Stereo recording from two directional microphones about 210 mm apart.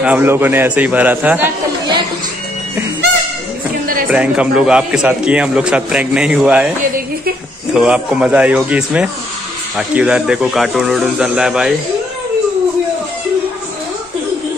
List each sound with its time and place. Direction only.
0.0 s a man's voice: 10° right (ahead or behind)
3.8 s a sound: 40° right (ahead or behind)
4.1 s a man's voice: 5° right (ahead or behind)
7.7 s a man's voice: 5° right (ahead or behind)